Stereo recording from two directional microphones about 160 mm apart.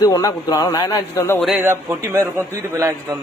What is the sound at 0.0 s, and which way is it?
A man's voice, 20° left (ahead or behind).